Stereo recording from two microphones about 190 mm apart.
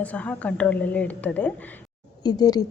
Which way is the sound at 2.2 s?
20° left (ahead or behind).